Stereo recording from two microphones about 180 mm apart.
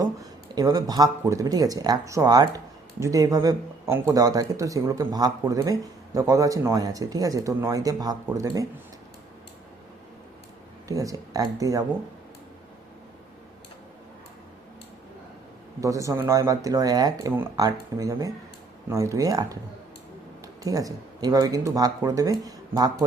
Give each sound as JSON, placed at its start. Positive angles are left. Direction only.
{"t": 0.0, "sound": "speech", "side_deg": -20}
{"t": 10.8, "sound": "speech", "side_deg": -20}
{"t": 15.8, "sound": "speech", "side_deg": -15}
{"t": 20.7, "sound": "speech", "side_deg": -20}